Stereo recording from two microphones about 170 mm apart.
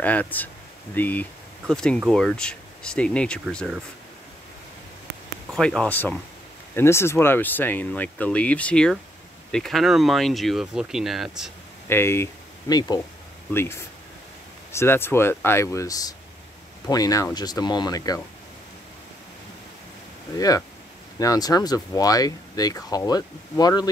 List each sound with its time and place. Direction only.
0.0 s speech: 10° left (ahead or behind)
5.5 s speech: 5° left (ahead or behind)
11.9 s speech: 15° left (ahead or behind)
20.3 s speech: 20° left (ahead or behind)